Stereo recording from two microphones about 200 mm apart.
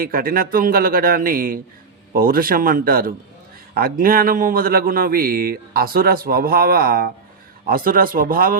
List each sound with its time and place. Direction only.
0.0 s a man's voice: 45° right (ahead or behind)